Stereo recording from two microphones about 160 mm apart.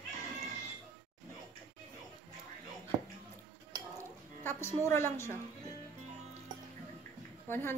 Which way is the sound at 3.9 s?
15° left (ahead or behind).